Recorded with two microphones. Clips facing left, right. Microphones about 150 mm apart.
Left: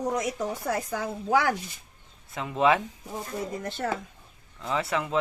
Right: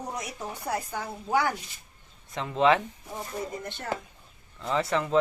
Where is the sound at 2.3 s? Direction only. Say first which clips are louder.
Even; 10° left (ahead or behind).